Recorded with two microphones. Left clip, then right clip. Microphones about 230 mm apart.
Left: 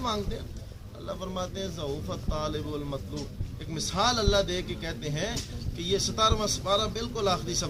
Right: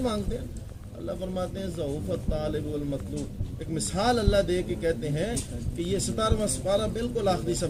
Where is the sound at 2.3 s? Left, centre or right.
Centre.